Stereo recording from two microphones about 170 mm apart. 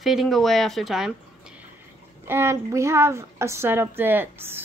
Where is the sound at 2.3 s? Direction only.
15° right (ahead or behind).